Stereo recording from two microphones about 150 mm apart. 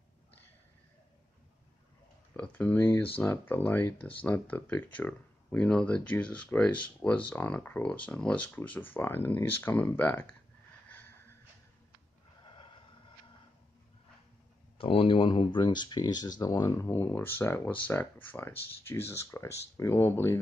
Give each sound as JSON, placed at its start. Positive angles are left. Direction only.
{"t": 2.3, "sound": "speech", "side_deg": 10}
{"t": 14.8, "sound": "speech", "side_deg": 35}